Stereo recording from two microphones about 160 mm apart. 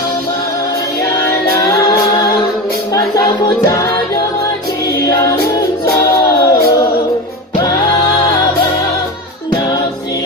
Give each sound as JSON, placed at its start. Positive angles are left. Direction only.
{"t": 1.6, "sound": "a capella", "side_deg": 20}
{"t": 2.9, "sound": "music", "side_deg": 20}
{"t": 5.0, "sound": "music", "side_deg": 20}